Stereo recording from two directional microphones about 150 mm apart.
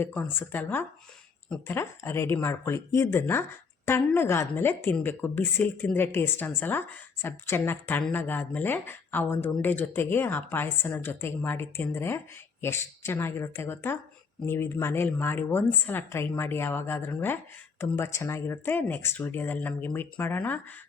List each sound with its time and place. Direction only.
0.0 s a woman's voice: 15° left (ahead or behind)
1.7 s a woman's voice: 15° left (ahead or behind)